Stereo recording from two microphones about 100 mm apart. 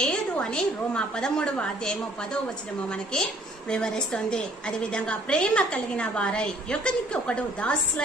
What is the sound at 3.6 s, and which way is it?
A woman's voice, 10° left (ahead or behind).